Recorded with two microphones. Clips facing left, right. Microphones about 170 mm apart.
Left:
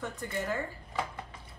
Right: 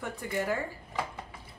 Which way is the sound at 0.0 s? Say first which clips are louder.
Right 3 dB; 10° right (ahead or behind).